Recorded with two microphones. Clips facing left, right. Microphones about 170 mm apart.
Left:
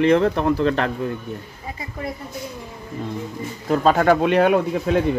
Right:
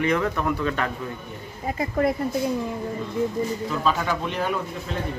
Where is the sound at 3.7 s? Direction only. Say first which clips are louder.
Left 13 dB; 50° left (ahead or behind); by 5.0 s 70° left (ahead or behind).